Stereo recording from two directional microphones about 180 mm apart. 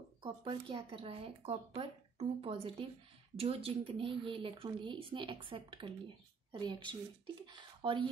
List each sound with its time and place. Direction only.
0.2 s speech: 25° right (ahead or behind)